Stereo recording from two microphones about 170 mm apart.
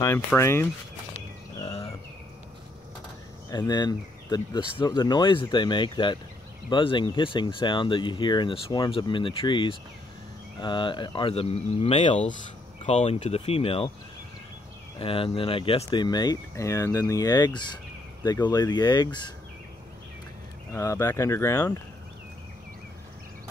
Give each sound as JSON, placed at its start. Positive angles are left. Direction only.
{"t": 0.0, "sound": "speech", "side_deg": 15}
{"t": 3.4, "sound": "speech", "side_deg": 25}
{"t": 15.0, "sound": "speech", "side_deg": 30}
{"t": 20.7, "sound": "speech", "side_deg": 20}